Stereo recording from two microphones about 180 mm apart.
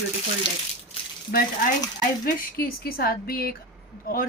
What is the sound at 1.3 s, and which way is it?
A woman's voice, 55° left (ahead or behind).